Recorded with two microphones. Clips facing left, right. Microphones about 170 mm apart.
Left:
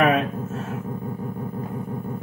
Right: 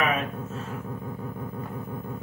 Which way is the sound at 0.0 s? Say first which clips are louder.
Left 7 dB; 60° left (ahead or behind).